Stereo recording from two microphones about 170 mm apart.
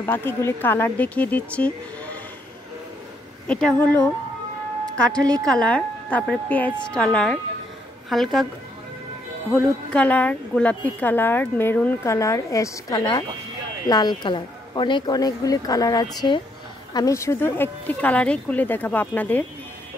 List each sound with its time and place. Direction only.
0.0 s a woman's voice: 15° left (ahead or behind)
3.4 s a woman's voice: 5° left (ahead or behind)
9.5 s a woman's voice: 5° left (ahead or behind)